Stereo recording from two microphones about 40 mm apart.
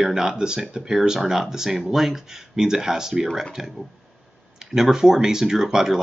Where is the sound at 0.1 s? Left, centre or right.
Centre.